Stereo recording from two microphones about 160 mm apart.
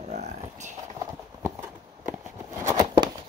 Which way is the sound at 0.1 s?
50° right (ahead or behind).